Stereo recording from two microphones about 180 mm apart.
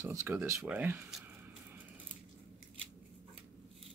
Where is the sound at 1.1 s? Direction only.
10° right (ahead or behind).